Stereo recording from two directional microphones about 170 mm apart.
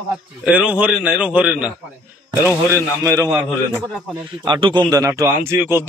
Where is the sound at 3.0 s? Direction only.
20° right (ahead or behind).